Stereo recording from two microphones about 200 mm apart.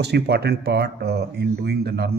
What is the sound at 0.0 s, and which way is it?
Speech, 55° right (ahead or behind).